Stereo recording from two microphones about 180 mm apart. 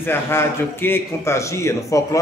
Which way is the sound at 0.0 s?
15° left (ahead or behind).